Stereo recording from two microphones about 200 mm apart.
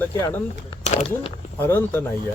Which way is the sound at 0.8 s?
35° left (ahead or behind).